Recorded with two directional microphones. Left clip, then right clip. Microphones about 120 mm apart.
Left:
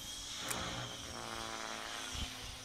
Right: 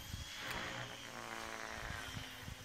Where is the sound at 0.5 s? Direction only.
10° right (ahead or behind).